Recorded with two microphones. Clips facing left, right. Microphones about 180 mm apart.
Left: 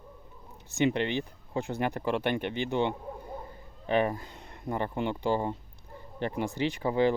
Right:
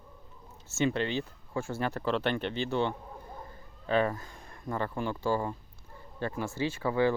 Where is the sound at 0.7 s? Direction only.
15° left (ahead or behind).